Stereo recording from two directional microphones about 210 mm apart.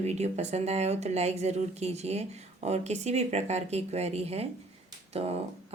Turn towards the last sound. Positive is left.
turn(degrees=-30)  # may be behind; listen again after turning